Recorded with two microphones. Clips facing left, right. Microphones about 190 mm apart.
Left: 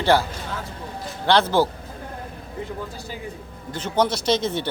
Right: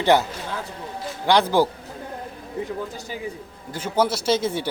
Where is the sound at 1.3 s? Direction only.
15° right (ahead or behind).